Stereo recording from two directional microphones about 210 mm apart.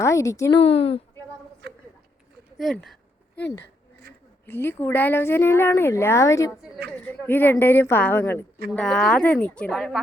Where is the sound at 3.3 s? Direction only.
55° left (ahead or behind).